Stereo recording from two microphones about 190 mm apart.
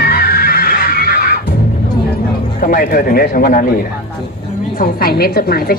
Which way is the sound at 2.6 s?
50° left (ahead or behind).